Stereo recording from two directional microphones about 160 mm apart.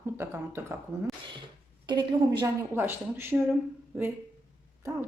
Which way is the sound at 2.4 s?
15° right (ahead or behind).